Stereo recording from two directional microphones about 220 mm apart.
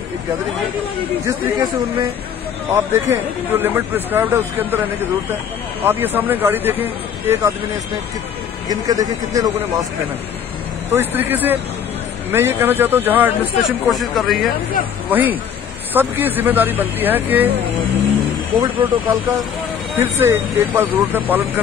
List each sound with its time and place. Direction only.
1.2 s speech: 15° right (ahead or behind)
5.9 s speech: 10° right (ahead or behind)
8.6 s speech: 15° right (ahead or behind)
10.9 s speech: 10° right (ahead or behind)
18.6 s speech: 15° right (ahead or behind)